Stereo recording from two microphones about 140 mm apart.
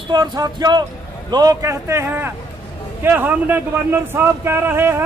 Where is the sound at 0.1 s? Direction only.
30° right (ahead or behind).